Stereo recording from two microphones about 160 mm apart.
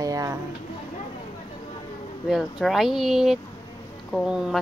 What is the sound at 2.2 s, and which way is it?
Speech, centre (ahead or behind).